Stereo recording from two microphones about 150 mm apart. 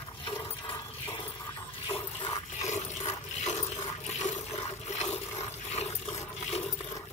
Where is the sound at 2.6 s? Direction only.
50° left (ahead or behind).